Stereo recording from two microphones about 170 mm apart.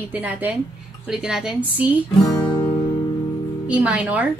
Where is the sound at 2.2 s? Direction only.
25° left (ahead or behind).